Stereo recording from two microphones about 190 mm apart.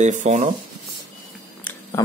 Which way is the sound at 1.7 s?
10° left (ahead or behind).